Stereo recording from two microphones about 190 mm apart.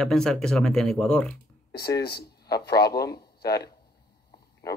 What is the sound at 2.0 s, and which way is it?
Speech, 55° left (ahead or behind).